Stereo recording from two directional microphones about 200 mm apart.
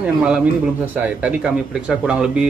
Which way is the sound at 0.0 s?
5° right (ahead or behind).